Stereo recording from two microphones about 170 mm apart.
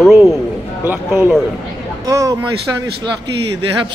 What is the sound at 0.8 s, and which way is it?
Speech, 10° right (ahead or behind).